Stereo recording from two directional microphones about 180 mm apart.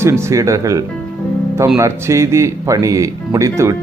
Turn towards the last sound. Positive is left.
turn(degrees=-15)  # may be behind; listen again after turning